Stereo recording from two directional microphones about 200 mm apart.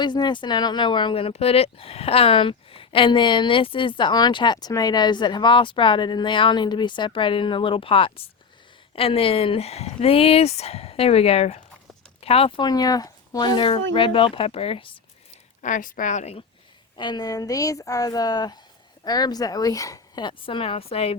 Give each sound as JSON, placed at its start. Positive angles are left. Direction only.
{"t": 0.0, "sound": "speech", "side_deg": 20}
{"t": 15.6, "sound": "speech", "side_deg": 40}
{"t": 17.0, "sound": "speech", "side_deg": 20}